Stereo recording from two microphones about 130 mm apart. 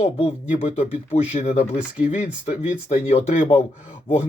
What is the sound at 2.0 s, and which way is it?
Speech, 75° left (ahead or behind).